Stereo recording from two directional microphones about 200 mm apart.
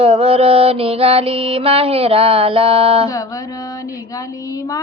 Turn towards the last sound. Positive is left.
turn(degrees=-30)  # may be behind; listen again after turning